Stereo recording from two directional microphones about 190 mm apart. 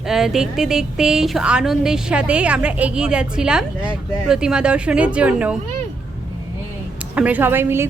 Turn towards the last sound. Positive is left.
turn(degrees=-10)  # may be behind; listen again after turning